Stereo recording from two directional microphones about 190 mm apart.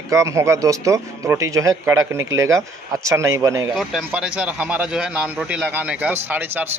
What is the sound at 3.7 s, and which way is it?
Speech, centre (ahead or behind).